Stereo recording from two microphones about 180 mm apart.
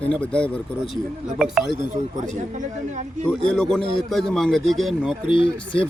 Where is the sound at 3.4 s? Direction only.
5° left (ahead or behind).